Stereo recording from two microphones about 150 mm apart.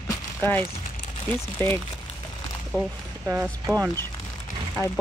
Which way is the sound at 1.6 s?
15° left (ahead or behind).